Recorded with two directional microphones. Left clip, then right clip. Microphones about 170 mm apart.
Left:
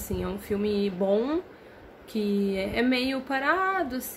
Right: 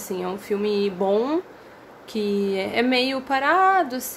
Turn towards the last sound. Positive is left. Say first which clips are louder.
# right 8 dB
turn(degrees=15)  # may be behind; listen again after turning